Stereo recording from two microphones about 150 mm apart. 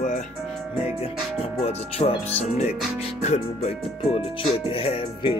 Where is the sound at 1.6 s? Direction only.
40° left (ahead or behind).